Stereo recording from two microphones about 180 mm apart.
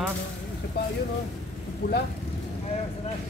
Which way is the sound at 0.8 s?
65° left (ahead or behind).